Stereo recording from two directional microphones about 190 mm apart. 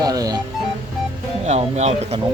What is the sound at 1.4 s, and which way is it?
Speech, 35° right (ahead or behind).